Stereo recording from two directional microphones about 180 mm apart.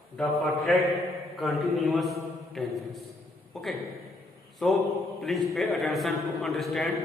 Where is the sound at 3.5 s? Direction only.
Centre (ahead or behind).